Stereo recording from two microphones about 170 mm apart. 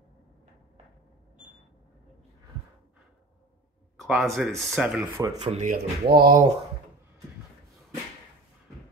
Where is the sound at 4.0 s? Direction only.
Centre (ahead or behind).